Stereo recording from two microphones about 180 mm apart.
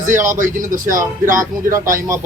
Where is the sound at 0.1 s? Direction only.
45° right (ahead or behind).